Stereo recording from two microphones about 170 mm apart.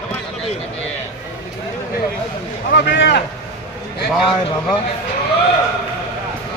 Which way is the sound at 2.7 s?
80° left.